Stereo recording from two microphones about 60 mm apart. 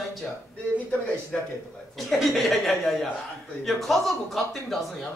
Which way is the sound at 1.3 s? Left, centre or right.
Centre.